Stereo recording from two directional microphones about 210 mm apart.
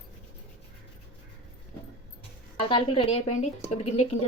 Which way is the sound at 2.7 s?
25° left (ahead or behind).